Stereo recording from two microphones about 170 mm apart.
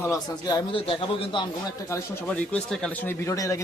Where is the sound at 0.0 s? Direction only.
20° left (ahead or behind).